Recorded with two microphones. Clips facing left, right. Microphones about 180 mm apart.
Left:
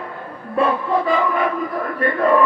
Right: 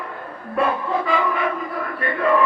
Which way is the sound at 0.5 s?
35° left (ahead or behind).